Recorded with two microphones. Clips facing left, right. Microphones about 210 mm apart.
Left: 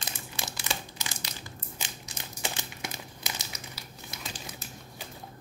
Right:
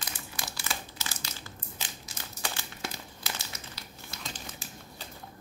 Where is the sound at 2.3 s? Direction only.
20° left (ahead or behind).